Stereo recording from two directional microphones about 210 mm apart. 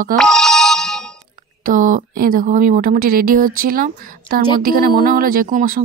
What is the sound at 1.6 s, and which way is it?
Speech, 40° right (ahead or behind).